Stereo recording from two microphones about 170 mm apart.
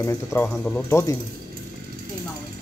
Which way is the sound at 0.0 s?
15° left (ahead or behind).